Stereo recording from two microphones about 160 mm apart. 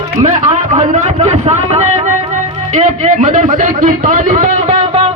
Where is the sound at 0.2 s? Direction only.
45° right (ahead or behind).